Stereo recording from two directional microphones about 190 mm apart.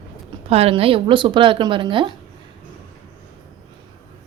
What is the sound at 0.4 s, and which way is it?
Speech, 30° right (ahead or behind).